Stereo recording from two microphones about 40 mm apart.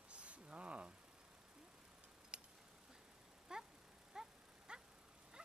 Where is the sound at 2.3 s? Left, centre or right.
Right.